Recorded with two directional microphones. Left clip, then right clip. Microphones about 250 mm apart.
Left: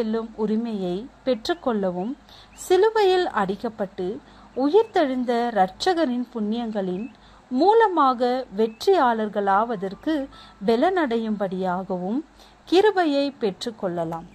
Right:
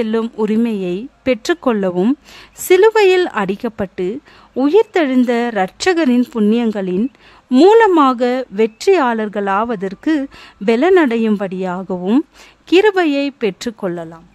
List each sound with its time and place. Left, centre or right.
0.0 s speech: right